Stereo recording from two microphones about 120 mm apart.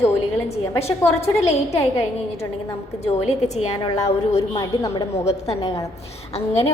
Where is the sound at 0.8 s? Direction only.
60° left (ahead or behind).